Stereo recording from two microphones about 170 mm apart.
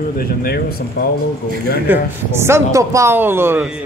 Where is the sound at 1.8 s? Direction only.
15° right (ahead or behind).